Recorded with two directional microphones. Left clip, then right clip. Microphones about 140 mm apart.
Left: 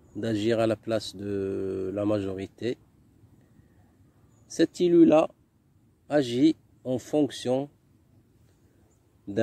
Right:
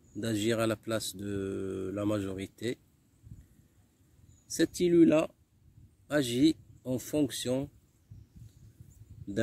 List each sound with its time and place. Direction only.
0.1 s speech: 25° right (ahead or behind)
4.5 s speech: 25° right (ahead or behind)